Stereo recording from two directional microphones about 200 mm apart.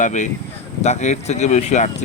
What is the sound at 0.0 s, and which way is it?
Speech, 35° left (ahead or behind).